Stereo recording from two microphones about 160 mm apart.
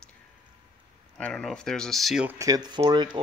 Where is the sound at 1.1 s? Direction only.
5° left (ahead or behind).